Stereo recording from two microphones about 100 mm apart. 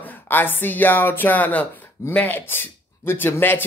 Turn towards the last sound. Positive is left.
turn(degrees=20)  # may be behind; listen again after turning